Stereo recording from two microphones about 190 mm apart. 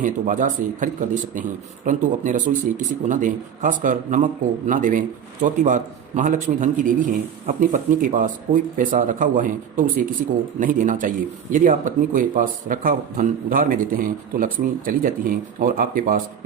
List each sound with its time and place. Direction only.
0.0 s speech: 45° right (ahead or behind)